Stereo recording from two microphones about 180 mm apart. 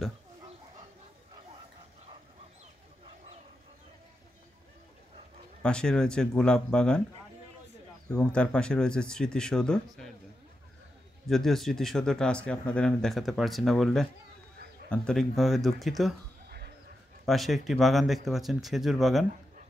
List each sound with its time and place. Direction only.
5.6 s speech: 5° left (ahead or behind)
8.1 s speech: 5° left (ahead or behind)
11.2 s speech: centre (ahead or behind)
16.4 s sheep: 65° right (ahead or behind)
17.3 s speech: centre (ahead or behind)